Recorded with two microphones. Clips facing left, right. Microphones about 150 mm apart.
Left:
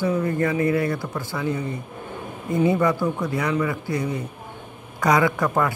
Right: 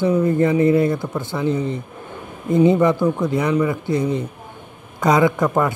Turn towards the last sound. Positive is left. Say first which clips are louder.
# right 4 dB
turn(degrees=-20)  # may be behind; listen again after turning